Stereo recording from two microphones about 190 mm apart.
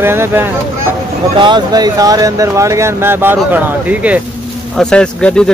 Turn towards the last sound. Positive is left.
turn(degrees=5)  # may be behind; listen again after turning